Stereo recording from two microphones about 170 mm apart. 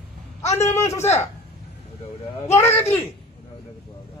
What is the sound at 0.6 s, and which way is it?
Speech, 15° left (ahead or behind).